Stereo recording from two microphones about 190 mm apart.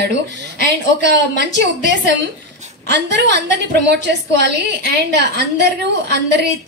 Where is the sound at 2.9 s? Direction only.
65° right (ahead or behind).